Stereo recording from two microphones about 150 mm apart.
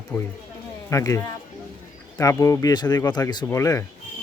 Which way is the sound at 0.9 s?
20° left (ahead or behind).